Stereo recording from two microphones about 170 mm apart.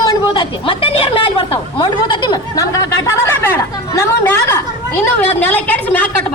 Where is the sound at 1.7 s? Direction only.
25° left (ahead or behind).